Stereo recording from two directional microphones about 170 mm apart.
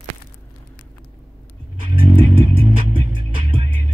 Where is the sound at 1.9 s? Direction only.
30° right (ahead or behind).